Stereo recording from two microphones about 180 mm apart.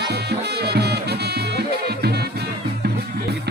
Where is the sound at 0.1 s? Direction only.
65° right (ahead or behind).